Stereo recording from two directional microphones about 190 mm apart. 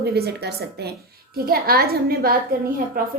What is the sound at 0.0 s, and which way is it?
A woman's voice, 60° right (ahead or behind).